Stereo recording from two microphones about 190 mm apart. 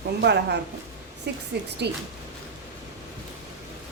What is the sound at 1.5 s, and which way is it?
Speech, 60° right (ahead or behind).